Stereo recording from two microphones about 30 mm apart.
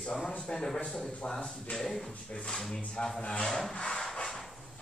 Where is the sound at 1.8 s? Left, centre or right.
Centre.